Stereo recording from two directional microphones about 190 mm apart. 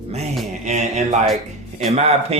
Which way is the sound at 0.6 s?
35° right (ahead or behind).